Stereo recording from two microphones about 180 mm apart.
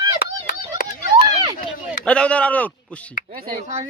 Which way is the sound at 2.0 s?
5° left (ahead or behind).